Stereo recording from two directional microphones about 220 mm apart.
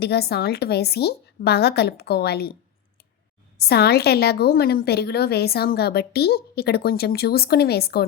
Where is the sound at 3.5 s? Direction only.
45° left (ahead or behind).